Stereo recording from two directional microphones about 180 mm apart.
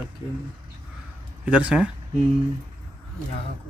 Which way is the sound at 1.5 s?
5° right (ahead or behind).